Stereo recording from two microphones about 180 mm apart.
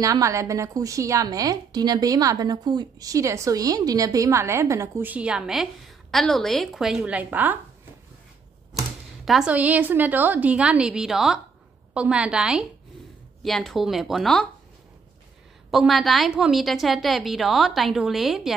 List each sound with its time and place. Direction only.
0.0 s a woman's voice: 20° right (ahead or behind)
8.7 s a woman's voice: centre (ahead or behind)
15.7 s a woman's voice: centre (ahead or behind)